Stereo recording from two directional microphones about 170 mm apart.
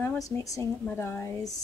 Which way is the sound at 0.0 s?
15° left (ahead or behind).